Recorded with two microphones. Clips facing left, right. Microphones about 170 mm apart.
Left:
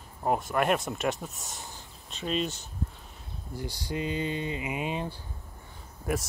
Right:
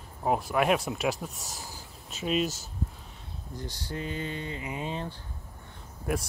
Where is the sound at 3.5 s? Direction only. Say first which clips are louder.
Left 3 dB; 10° left (ahead or behind).